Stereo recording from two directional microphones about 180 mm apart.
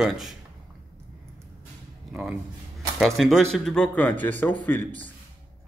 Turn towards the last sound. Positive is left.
turn(degrees=10)  # may be behind; listen again after turning